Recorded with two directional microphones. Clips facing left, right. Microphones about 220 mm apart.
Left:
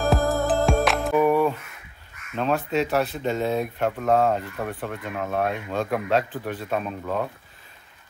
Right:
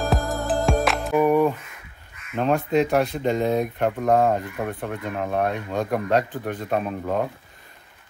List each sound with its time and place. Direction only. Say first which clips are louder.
0.1 s music: left 2 dB; centre (ahead or behind)
1.1 s a sound: right 2 dB; 15° right (ahead or behind)
2.3 s speech: right 3 dB; 15° right (ahead or behind)
6.7 s speech: right 3 dB; 40° right (ahead or behind)